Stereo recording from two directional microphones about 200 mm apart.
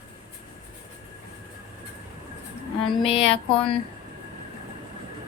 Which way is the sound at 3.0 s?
30° left (ahead or behind).